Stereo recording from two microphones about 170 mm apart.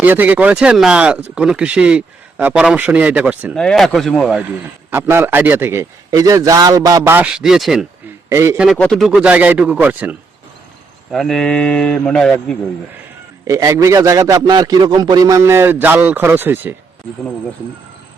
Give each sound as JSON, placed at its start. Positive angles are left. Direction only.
{"t": 0.0, "sound": "speech", "side_deg": -10}
{"t": 3.5, "sound": "speech", "side_deg": 5}
{"t": 4.9, "sound": "speech", "side_deg": -15}
{"t": 8.3, "sound": "a man's voice", "side_deg": -15}
{"t": 8.5, "sound": "speech", "side_deg": 0}
{"t": 11.1, "sound": "speech", "side_deg": 0}
{"t": 13.5, "sound": "a man's voice", "side_deg": -20}